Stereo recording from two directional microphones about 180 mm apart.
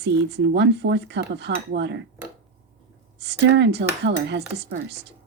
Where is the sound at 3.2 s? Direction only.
75° right (ahead or behind).